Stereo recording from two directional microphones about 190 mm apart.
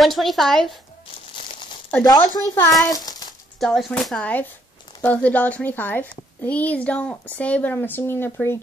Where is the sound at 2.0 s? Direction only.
20° left (ahead or behind).